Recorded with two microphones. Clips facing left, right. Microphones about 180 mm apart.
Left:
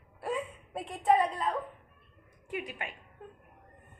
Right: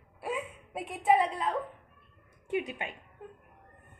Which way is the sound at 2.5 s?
25° right (ahead or behind).